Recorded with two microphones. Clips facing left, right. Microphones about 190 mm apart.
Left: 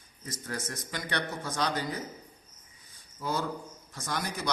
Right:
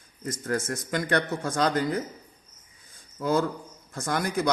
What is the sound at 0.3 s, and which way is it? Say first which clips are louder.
A man's voice: right 9 dB; 50° right (ahead or behind).